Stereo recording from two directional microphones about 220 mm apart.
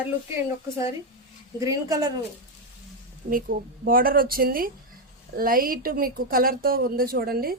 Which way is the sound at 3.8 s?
40° right (ahead or behind).